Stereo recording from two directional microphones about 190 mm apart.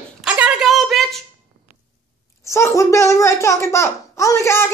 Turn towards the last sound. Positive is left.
turn(degrees=15)  # may be behind; listen again after turning